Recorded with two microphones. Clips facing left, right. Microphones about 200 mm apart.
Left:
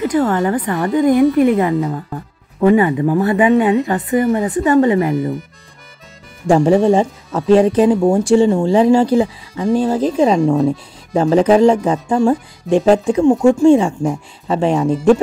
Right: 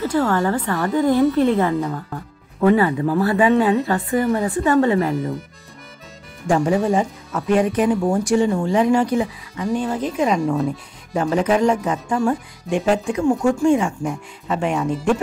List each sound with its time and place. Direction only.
0.0 s speech: 20° left (ahead or behind)
6.4 s speech: 30° left (ahead or behind)